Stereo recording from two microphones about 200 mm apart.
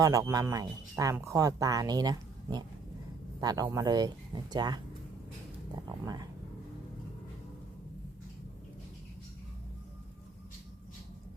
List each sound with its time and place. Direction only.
0.0 s speech: 15° right (ahead or behind)